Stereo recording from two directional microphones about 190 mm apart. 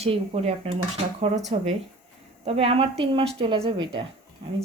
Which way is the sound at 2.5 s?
30° right (ahead or behind).